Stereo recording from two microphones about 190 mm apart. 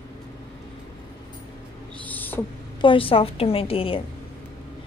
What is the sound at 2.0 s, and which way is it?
Owl, 10° left (ahead or behind).